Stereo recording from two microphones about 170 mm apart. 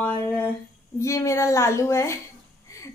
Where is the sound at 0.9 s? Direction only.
15° left (ahead or behind).